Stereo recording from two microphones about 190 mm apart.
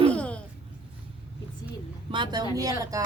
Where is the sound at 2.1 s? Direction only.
20° right (ahead or behind).